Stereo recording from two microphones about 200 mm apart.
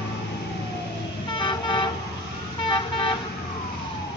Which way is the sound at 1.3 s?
25° left (ahead or behind).